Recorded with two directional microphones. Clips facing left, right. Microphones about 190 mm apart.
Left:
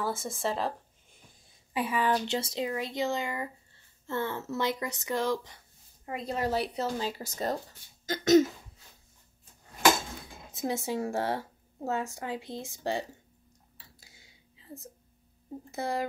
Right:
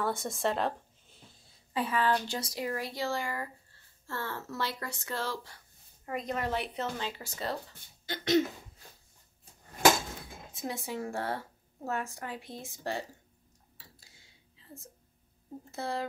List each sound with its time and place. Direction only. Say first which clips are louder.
0.0 s speech: right 1 dB; centre (ahead or behind)
1.7 s speech: left 1 dB; 15° left (ahead or behind)
6.0 s speech: left 2 dB; 30° left (ahead or behind)
8.1 s cough: left 6 dB; 45° left (ahead or behind)
10.5 s speech: left 6 dB; 25° left (ahead or behind)
15.7 s speech: left 3 dB; 15° left (ahead or behind)